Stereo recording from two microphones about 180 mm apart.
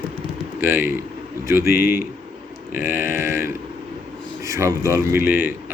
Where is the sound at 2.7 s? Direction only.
50° left (ahead or behind).